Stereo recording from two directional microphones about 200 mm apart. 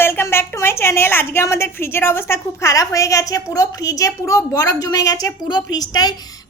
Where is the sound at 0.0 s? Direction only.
10° left (ahead or behind).